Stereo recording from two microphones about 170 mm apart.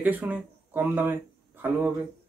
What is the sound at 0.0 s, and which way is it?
Speech, 10° right (ahead or behind).